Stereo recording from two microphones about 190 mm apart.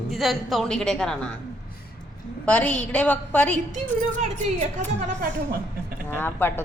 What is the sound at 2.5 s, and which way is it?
Speech, 5° left (ahead or behind).